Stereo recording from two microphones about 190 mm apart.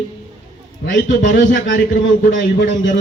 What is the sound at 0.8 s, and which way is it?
A man's voice, 70° left (ahead or behind).